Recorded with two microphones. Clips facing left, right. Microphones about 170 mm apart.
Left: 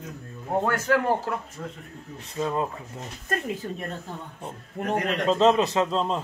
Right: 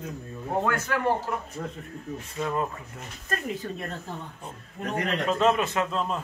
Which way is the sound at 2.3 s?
20° left (ahead or behind).